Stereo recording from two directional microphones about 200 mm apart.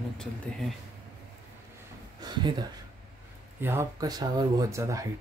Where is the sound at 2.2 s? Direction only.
20° right (ahead or behind).